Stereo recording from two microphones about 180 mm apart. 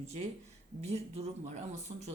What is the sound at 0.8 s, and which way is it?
Speech, 35° right (ahead or behind).